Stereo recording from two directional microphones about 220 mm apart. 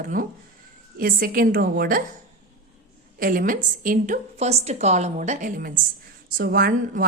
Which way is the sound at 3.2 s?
40° right (ahead or behind).